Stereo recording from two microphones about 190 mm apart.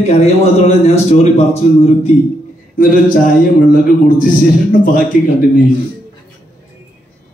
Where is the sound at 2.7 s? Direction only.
45° left (ahead or behind).